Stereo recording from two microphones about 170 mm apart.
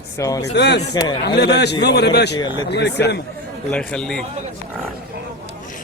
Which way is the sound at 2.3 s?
25° left (ahead or behind).